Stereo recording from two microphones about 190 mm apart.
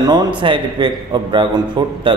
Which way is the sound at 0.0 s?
20° right (ahead or behind).